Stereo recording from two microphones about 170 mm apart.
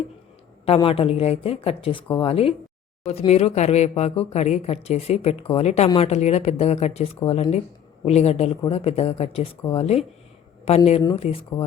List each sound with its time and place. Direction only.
0.6 s speech: 35° left (ahead or behind)